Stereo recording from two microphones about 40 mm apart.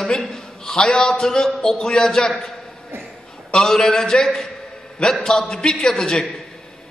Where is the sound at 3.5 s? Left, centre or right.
Left.